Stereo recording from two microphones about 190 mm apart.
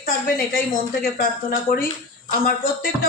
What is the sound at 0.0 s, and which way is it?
A woman's voice, 50° left (ahead or behind).